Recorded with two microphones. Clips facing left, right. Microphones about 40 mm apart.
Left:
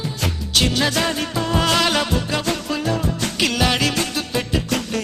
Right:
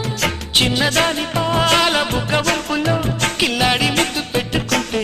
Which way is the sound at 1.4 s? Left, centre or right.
Right.